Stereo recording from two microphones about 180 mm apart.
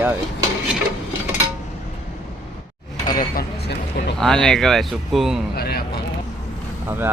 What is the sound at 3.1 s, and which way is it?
Speech, 55° left (ahead or behind).